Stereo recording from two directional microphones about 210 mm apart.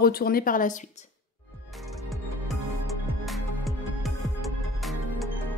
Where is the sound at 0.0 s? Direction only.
45° left (ahead or behind).